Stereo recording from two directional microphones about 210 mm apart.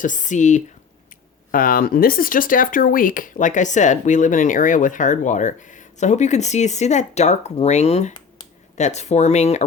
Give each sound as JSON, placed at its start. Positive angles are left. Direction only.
{"t": 0.0, "sound": "speech", "side_deg": 35}